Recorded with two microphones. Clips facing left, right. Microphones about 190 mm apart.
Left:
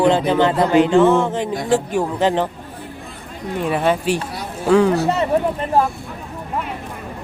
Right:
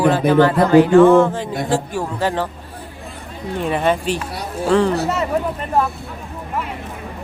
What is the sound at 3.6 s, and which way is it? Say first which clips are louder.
Speech: even; 10° left (ahead or behind).